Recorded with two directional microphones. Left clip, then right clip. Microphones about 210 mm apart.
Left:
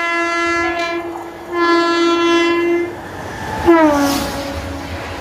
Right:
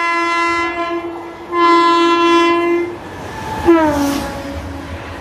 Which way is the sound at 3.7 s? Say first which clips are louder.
Even; 15° left (ahead or behind).